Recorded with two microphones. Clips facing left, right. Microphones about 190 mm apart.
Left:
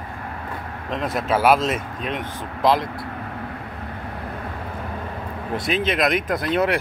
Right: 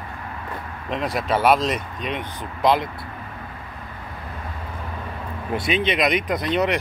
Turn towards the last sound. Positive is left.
turn(degrees=5)  # may be behind; listen again after turning